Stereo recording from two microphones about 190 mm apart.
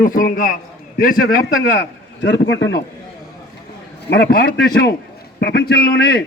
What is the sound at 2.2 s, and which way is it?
Speech, 65° left (ahead or behind).